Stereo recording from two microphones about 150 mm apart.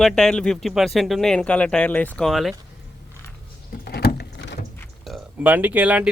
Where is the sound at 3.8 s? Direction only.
90° left.